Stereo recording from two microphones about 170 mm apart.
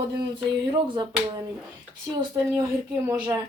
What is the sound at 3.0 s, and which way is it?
Speech, 20° right (ahead or behind).